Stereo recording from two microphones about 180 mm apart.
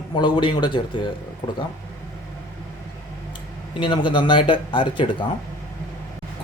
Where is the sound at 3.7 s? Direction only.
25° left (ahead or behind).